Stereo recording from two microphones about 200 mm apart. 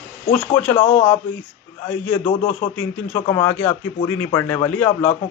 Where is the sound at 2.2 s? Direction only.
35° left (ahead or behind).